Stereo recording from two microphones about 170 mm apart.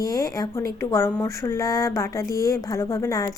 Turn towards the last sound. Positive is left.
turn(degrees=20)  # may be behind; listen again after turning